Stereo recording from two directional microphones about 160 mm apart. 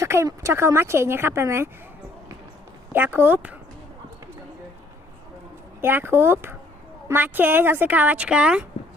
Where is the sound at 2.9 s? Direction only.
15° right (ahead or behind).